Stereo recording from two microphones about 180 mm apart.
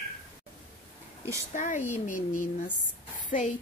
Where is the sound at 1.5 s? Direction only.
45° left (ahead or behind).